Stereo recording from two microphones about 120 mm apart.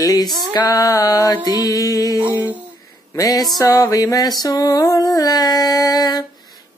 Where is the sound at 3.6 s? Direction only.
30° left (ahead or behind).